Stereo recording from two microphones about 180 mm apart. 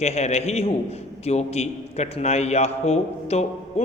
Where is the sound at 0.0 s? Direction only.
35° left (ahead or behind).